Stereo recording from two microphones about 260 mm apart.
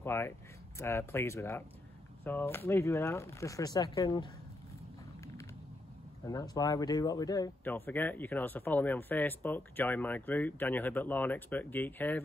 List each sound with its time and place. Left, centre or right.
0.0 s speech: centre
6.2 s speech: centre